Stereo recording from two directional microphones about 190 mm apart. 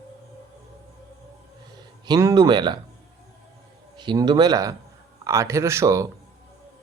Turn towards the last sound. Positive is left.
turn(degrees=-15)  # may be behind; listen again after turning